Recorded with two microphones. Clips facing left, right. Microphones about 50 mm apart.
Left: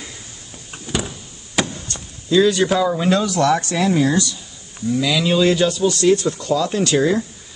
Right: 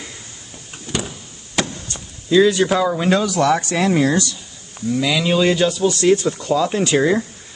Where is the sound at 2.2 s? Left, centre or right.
Centre.